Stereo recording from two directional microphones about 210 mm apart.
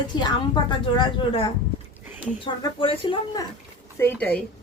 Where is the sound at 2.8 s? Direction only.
25° left (ahead or behind).